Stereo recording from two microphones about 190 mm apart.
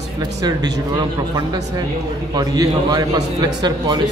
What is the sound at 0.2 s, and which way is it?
A man's voice, 20° right (ahead or behind).